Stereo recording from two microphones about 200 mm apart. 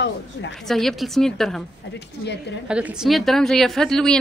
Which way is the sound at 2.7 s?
5° right (ahead or behind).